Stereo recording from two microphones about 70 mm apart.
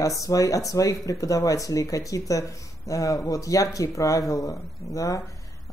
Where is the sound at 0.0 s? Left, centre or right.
Left.